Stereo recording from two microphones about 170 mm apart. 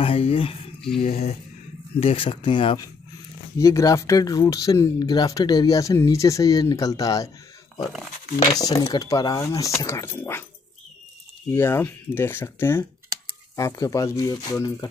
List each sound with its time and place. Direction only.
0.0 s speech: 35° left (ahead or behind)
3.5 s speech: 20° left (ahead or behind)
8.5 s speech: 20° left (ahead or behind)
11.5 s speech: 15° left (ahead or behind)